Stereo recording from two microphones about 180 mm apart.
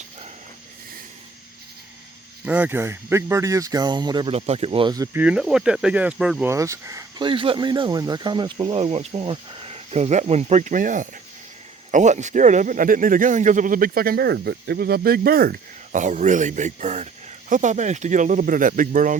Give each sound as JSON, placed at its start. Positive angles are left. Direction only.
{"t": 2.5, "sound": "speech", "side_deg": -10}
{"t": 4.4, "sound": "speech", "side_deg": -35}
{"t": 5.1, "sound": "speech", "side_deg": -5}
{"t": 6.5, "sound": "speech", "side_deg": -15}